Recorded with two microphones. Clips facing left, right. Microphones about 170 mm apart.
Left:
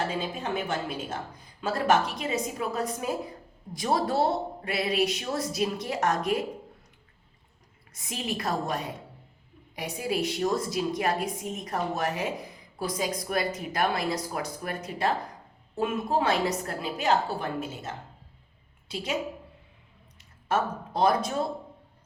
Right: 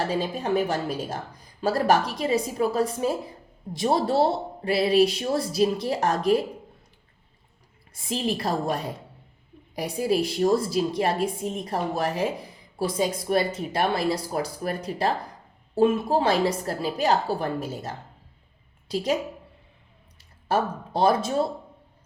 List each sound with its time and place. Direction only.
0.0 s a woman's voice: 35° right (ahead or behind)
7.9 s a woman's voice: 30° right (ahead or behind)
20.1 s speech: 30° right (ahead or behind)